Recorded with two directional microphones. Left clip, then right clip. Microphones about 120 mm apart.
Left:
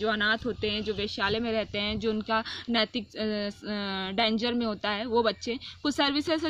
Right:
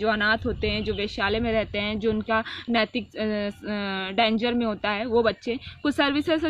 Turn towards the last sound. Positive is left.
turn(degrees=50)  # may be behind; listen again after turning